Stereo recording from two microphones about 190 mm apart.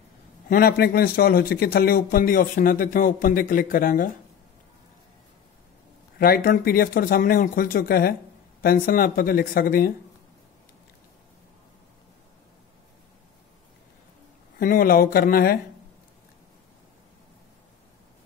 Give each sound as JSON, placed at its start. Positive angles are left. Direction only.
{"t": 0.5, "sound": "a man's voice", "side_deg": 50}
{"t": 6.1, "sound": "a man's voice", "side_deg": 50}
{"t": 14.6, "sound": "a man's voice", "side_deg": 50}